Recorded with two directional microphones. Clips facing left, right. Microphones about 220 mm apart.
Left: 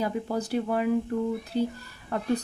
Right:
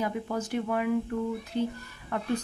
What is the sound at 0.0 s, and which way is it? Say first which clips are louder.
Speech: left 2 dB; 35° left (ahead or behind).